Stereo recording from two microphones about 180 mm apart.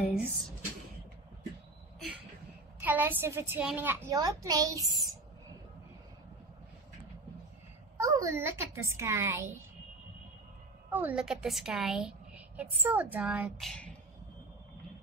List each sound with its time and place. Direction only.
0.0 s speech: 10° right (ahead or behind)
2.8 s a woman's voice: 10° right (ahead or behind)
8.0 s a woman's voice: 20° right (ahead or behind)
10.9 s a woman's voice: 10° right (ahead or behind)